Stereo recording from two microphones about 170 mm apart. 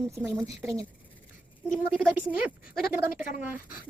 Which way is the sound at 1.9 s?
10° right (ahead or behind).